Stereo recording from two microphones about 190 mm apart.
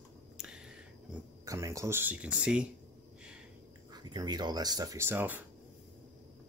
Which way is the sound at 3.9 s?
20° right (ahead or behind).